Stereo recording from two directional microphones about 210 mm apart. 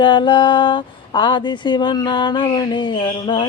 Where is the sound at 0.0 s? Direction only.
20° left (ahead or behind).